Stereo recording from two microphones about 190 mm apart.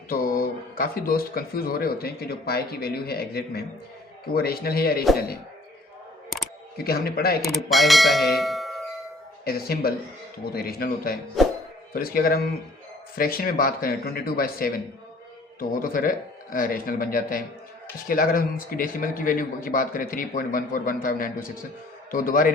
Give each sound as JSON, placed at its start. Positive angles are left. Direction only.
{"t": 0.1, "sound": "speech", "side_deg": 50}
{"t": 6.8, "sound": "speech", "side_deg": 55}
{"t": 7.4, "sound": "speech", "side_deg": 0}
{"t": 9.4, "sound": "speech", "side_deg": 55}
{"t": 15.8, "sound": "speech", "side_deg": 45}